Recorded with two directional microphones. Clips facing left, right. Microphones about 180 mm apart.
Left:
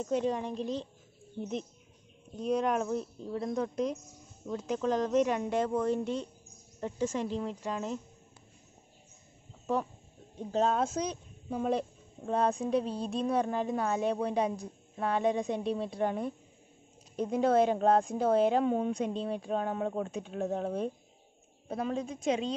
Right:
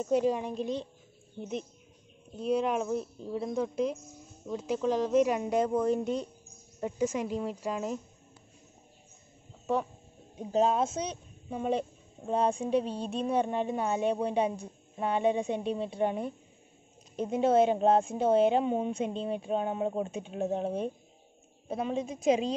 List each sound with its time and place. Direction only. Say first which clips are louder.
0.0 s speech: right 3 dB; 10° right (ahead or behind)
10.3 s speech: right 2 dB; 10° right (ahead or behind)
17.6 s speech: right 1 dB; 25° right (ahead or behind)
18.6 s speech: even; 5° right (ahead or behind)
19.8 s speech: right 2 dB; 20° right (ahead or behind)
20.1 s speech: right 1 dB; 5° right (ahead or behind)
20.4 s speech: right 2 dB; 25° right (ahead or behind)
21.6 s speech: right 1 dB; 5° right (ahead or behind)